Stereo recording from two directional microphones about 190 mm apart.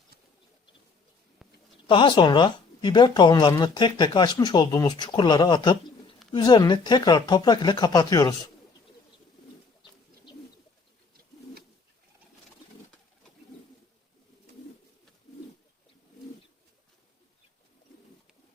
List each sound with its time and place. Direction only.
1.9 s speech: 25° left (ahead or behind)